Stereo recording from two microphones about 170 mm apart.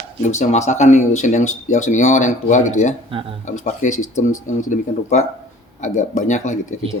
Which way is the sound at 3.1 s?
30° right (ahead or behind).